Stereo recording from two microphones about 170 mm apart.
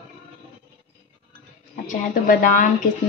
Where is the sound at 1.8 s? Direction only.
50° left (ahead or behind).